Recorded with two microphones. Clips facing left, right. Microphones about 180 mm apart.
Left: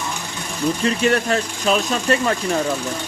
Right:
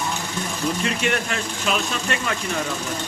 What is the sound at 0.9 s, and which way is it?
Speech, 35° left (ahead or behind).